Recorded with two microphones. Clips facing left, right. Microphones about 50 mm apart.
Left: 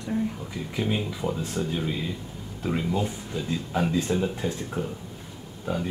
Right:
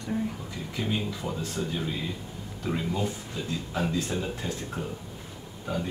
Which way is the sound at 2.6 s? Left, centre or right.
Centre.